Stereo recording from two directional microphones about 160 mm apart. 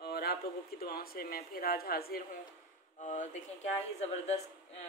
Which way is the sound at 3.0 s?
50° left (ahead or behind).